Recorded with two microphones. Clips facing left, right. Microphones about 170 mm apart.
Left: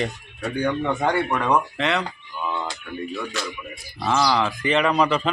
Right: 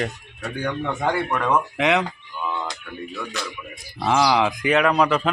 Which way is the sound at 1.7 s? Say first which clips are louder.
Right 4 dB; 15° right (ahead or behind).